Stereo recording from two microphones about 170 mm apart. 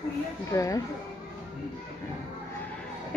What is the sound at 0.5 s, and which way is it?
Speech, 20° left (ahead or behind).